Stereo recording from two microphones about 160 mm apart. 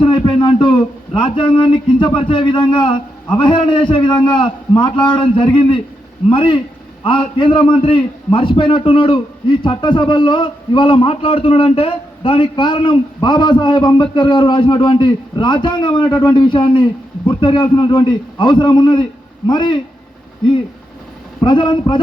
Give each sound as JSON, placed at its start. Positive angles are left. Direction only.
{"t": 0.0, "sound": "a man's voice", "side_deg": 30}
{"t": 21.4, "sound": "a man's voice", "side_deg": 30}